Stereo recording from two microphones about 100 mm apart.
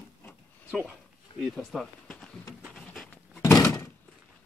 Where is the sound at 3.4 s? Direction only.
30° left (ahead or behind).